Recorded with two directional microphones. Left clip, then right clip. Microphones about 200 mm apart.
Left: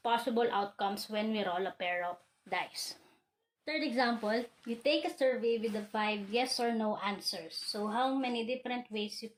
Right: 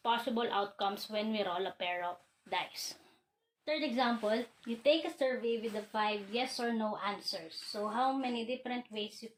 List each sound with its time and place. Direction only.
0.0 s speech: 30° left (ahead or behind)
4.8 s a woman's voice: 40° left (ahead or behind)